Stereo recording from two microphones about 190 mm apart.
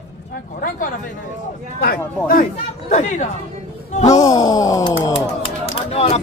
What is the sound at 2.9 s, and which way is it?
Speech, 40° left (ahead or behind).